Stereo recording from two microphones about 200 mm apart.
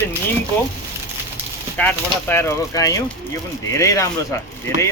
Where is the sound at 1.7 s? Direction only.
10° left (ahead or behind).